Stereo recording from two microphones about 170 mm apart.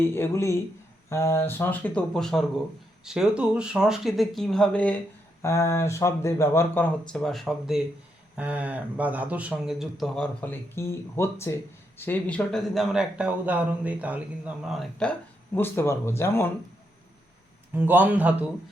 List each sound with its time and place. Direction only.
0.0 s speech: 15° left (ahead or behind)
7.1 s speech: centre (ahead or behind)
15.5 s speech: 15° left (ahead or behind)
17.7 s speech: 10° right (ahead or behind)